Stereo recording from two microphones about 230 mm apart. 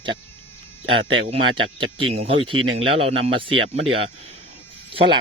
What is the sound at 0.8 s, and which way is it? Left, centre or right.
Speech, right.